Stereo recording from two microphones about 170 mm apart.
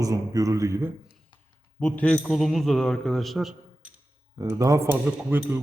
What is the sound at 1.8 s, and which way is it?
A man's voice, 10° left (ahead or behind).